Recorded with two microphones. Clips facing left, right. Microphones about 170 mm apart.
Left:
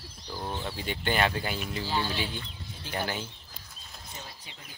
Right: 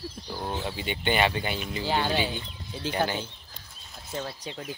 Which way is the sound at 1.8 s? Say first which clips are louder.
Right 6 dB; 65° right (ahead or behind).